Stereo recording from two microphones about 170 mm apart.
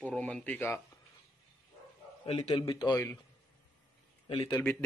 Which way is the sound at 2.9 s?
15° left (ahead or behind).